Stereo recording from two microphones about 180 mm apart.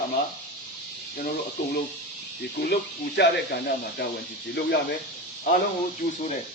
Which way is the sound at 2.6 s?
60° left (ahead or behind).